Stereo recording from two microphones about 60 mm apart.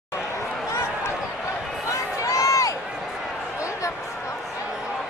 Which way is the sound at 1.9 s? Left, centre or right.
Left.